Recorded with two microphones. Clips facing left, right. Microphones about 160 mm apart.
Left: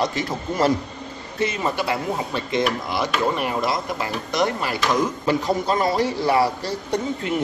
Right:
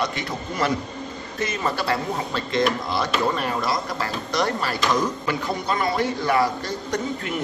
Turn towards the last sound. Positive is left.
turn(degrees=30)  # may be behind; listen again after turning